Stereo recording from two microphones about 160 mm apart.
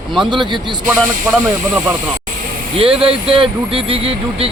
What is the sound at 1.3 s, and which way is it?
Speech, 10° right (ahead or behind).